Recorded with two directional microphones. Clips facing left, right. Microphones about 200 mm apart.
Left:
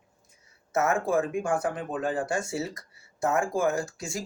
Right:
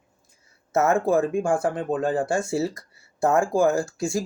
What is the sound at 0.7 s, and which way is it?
Speech, 25° right (ahead or behind).